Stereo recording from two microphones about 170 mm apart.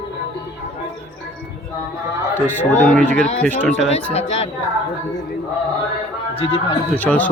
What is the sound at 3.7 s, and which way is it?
Speech, 40° left (ahead or behind).